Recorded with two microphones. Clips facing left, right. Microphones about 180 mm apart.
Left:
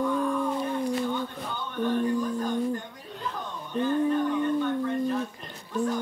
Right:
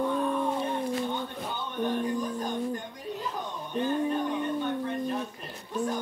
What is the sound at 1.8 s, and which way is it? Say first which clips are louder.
Music: left 3 dB; 15° right (ahead or behind).